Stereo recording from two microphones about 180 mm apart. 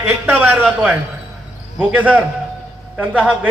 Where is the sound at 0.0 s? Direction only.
10° right (ahead or behind).